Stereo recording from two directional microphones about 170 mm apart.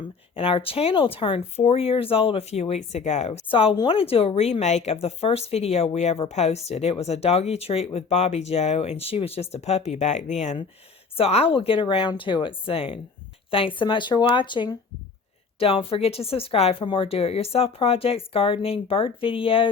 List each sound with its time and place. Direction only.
0.3 s speech: 30° left (ahead or behind)